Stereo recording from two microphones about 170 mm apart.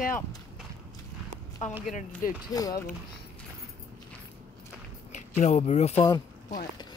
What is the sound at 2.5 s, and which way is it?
Speech, 20° left (ahead or behind).